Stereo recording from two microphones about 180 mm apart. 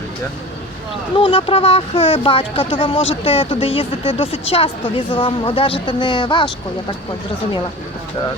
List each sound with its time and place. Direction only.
1.1 s speech: 30° left (ahead or behind)